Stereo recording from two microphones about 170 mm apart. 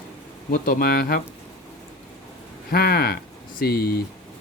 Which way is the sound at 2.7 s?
65° left (ahead or behind).